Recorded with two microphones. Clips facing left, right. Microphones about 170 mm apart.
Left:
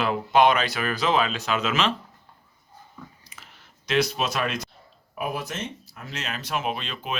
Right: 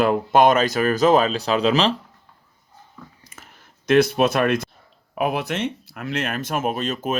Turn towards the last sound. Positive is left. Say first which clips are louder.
# right 6 dB
turn(degrees=-45)  # may be behind; listen again after turning